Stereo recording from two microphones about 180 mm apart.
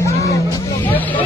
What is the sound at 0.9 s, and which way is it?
Vehicle, 10° left (ahead or behind).